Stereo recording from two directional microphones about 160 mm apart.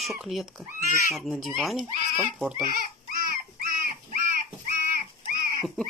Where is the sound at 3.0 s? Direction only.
60° right (ahead or behind).